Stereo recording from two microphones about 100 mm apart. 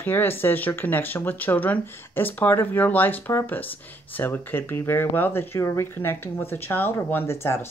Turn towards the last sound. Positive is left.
turn(degrees=25)  # may be behind; listen again after turning